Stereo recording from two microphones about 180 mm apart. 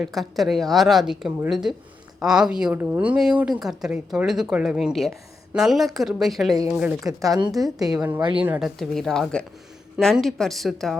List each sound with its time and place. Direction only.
0.0 s a woman's voice: centre (ahead or behind)
7.2 s a woman's voice: 20° right (ahead or behind); by 10.9 s centre (ahead or behind)